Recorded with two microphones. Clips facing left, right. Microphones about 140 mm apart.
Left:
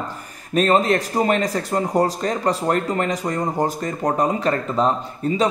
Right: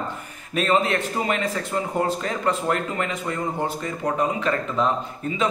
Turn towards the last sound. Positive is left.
turn(degrees=35)  # may be behind; listen again after turning